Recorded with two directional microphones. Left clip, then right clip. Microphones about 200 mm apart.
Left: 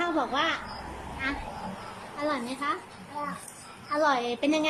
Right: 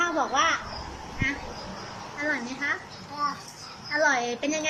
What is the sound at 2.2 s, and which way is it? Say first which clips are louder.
Speech: right 1 dB; 15° left (ahead or behind).